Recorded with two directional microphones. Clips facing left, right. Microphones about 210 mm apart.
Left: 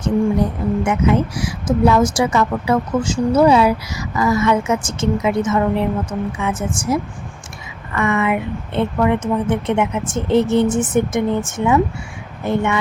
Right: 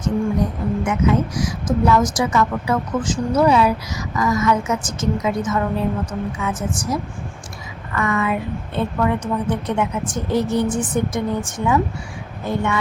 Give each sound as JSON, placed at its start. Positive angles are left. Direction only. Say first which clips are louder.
{"t": 0.9, "sound": "a woman's voice", "louder": "left 1 dB", "side_deg": 30}